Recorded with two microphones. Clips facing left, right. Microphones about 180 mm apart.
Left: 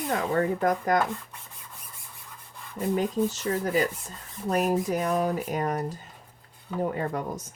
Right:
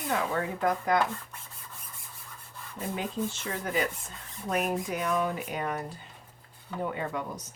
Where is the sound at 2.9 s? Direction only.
40° left (ahead or behind).